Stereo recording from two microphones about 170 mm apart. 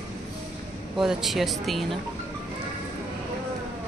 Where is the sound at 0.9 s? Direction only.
Centre (ahead or behind).